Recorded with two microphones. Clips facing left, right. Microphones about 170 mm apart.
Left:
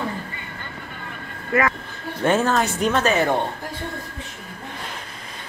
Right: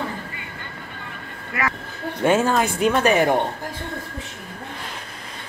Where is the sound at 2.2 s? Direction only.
10° right (ahead or behind).